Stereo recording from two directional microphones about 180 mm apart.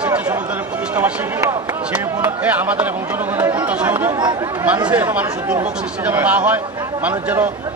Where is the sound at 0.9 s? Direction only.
15° right (ahead or behind).